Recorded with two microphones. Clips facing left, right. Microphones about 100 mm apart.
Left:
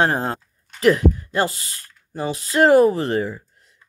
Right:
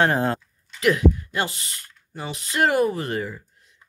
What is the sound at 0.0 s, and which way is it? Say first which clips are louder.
Speech: even; 30° left (ahead or behind).